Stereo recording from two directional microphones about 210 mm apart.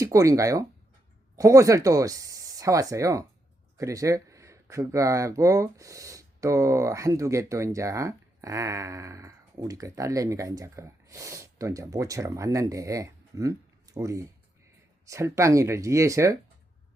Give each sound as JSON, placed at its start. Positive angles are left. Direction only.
{"t": 0.0, "sound": "speech", "side_deg": -15}